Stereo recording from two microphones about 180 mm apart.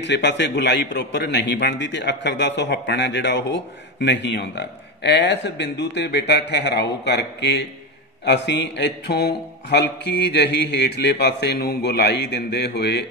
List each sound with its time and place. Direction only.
0.0 s a man's voice: 75° left (ahead or behind)